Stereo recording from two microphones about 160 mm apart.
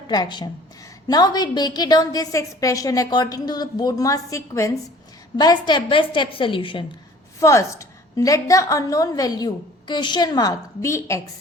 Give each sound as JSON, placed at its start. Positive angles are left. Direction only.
{"t": 0.1, "sound": "a woman's voice", "side_deg": 25}
{"t": 7.3, "sound": "a woman's voice", "side_deg": 20}